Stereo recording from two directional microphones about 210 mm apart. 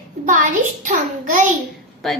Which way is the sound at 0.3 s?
40° right (ahead or behind).